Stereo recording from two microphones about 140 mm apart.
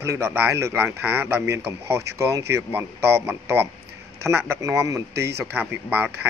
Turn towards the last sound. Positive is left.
turn(degrees=-15)  # may be behind; listen again after turning